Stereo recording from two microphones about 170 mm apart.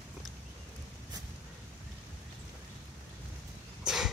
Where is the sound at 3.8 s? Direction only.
5° right (ahead or behind).